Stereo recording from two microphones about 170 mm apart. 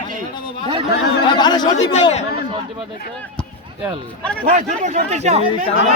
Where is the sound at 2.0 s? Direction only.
40° left (ahead or behind).